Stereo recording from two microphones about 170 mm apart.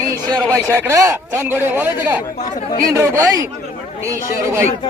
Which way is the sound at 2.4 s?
45° left (ahead or behind).